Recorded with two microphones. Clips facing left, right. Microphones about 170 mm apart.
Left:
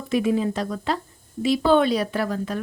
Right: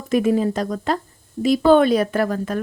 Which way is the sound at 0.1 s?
45° right (ahead or behind).